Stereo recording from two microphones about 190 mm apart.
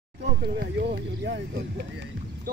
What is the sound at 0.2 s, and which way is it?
Speech, 60° right (ahead or behind).